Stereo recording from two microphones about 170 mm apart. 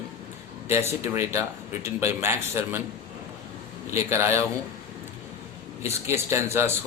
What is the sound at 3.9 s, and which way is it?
Speech, 15° right (ahead or behind).